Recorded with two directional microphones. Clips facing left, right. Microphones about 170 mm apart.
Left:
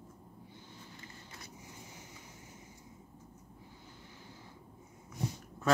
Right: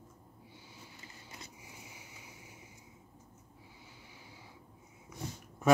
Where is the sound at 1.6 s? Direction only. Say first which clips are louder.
Left 2 dB; 10° right (ahead or behind).